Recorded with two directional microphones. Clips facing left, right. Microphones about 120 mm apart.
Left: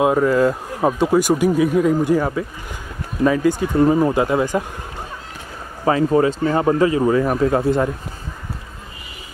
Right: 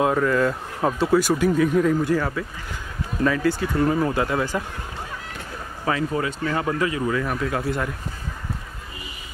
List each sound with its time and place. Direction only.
0.0 s speech: 15° left (ahead or behind)
5.9 s speech: 35° left (ahead or behind)